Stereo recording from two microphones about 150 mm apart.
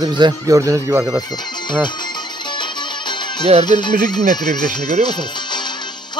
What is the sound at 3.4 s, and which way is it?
Music, 45° right (ahead or behind).